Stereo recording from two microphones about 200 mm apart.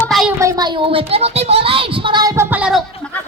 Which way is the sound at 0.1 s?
Centre (ahead or behind).